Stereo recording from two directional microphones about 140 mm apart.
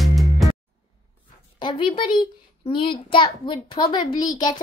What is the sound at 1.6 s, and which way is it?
A child's voice, 35° left (ahead or behind).